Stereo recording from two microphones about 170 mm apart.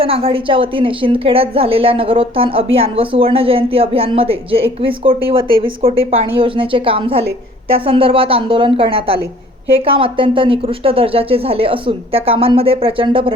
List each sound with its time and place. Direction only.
0.0 s a woman's voice: 35° right (ahead or behind)